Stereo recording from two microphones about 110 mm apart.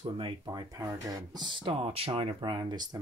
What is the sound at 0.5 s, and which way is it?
Speech, 35° right (ahead or behind).